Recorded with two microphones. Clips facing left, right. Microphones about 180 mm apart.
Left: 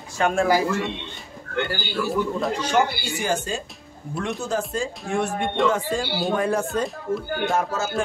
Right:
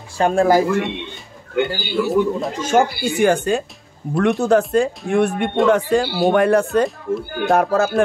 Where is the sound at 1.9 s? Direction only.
20° right (ahead or behind).